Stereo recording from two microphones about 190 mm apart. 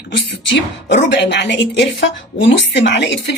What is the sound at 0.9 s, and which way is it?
A woman's voice, 65° left (ahead or behind).